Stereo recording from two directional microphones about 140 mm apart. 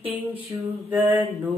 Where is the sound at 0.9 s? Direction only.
10° right (ahead or behind).